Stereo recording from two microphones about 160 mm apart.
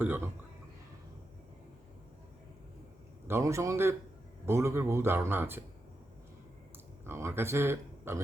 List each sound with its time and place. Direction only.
0.0 s a man's voice: 15° right (ahead or behind)
3.2 s a man's voice: 15° right (ahead or behind)
7.0 s speech: 15° right (ahead or behind)